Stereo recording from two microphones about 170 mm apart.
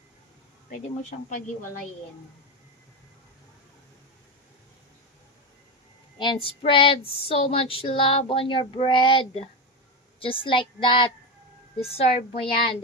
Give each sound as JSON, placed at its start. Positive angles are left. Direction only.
{"t": 0.7, "sound": "speech", "side_deg": 50}
{"t": 6.1, "sound": "child singing", "side_deg": 30}